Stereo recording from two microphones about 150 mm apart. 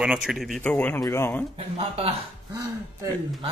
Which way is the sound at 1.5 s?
40° right (ahead or behind).